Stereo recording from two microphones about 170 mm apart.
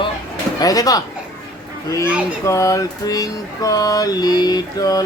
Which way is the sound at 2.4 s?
20° left (ahead or behind).